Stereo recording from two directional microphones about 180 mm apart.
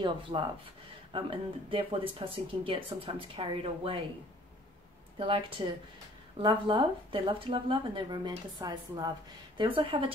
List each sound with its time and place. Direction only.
0.0 s speech: 25° right (ahead or behind)
5.6 s speech: 25° right (ahead or behind)